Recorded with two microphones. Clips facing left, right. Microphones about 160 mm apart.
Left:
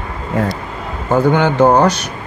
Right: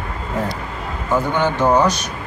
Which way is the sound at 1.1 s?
60° left (ahead or behind).